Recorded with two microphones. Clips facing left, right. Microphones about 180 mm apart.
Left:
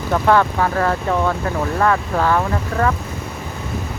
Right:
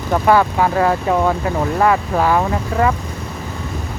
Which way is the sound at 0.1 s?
10° right (ahead or behind).